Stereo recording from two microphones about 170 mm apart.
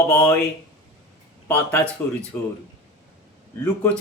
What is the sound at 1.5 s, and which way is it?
Speech, 10° left (ahead or behind).